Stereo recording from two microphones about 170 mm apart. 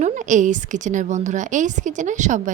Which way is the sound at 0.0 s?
45° right (ahead or behind).